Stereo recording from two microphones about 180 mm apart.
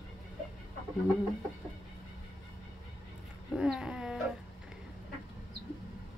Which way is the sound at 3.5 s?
5° right (ahead or behind).